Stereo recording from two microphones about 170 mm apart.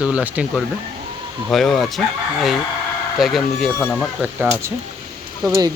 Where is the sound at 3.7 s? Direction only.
10° left (ahead or behind).